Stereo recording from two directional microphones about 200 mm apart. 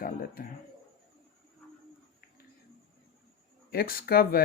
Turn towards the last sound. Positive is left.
turn(degrees=50)  # may be behind; listen again after turning